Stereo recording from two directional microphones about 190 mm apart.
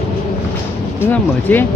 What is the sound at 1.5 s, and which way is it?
Speech, 10° left (ahead or behind).